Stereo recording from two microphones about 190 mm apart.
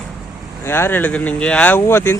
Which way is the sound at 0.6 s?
10° left (ahead or behind).